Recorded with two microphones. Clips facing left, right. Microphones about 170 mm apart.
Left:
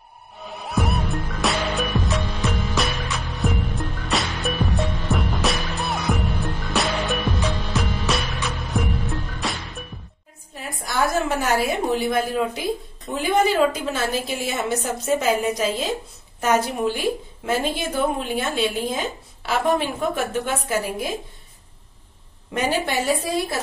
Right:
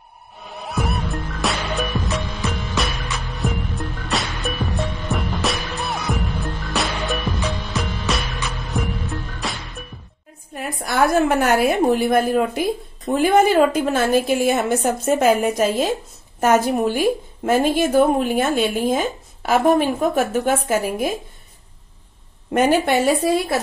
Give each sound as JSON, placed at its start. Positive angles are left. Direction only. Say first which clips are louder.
{"t": 0.5, "sound": "music", "louder": "even", "side_deg": 0}
{"t": 10.5, "sound": "a woman's voice", "louder": "right 4 dB", "side_deg": -60}
{"t": 22.5, "sound": "a woman's voice", "louder": "right 7 dB", "side_deg": -55}